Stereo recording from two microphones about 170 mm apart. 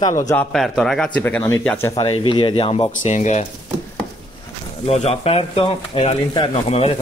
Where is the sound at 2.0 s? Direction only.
30° left (ahead or behind).